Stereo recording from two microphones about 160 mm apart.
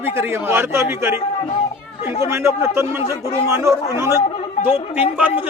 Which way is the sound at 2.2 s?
15° right (ahead or behind).